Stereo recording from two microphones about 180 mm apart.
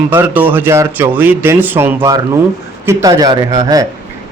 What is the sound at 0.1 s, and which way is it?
A man's voice, 10° right (ahead or behind).